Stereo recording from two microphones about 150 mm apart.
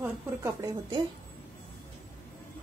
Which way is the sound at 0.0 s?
20° right (ahead or behind).